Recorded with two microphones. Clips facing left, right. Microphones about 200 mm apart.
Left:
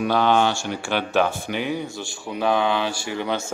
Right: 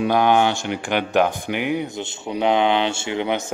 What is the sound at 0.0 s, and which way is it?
A man's voice, 15° right (ahead or behind).